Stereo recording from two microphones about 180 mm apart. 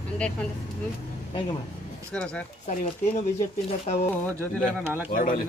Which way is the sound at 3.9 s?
40° left (ahead or behind).